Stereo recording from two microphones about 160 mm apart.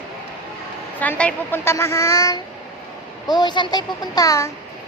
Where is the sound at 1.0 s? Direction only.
10° left (ahead or behind).